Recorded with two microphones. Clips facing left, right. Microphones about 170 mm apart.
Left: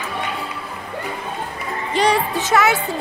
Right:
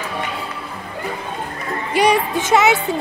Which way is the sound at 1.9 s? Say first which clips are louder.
Right 2 dB; 10° right (ahead or behind).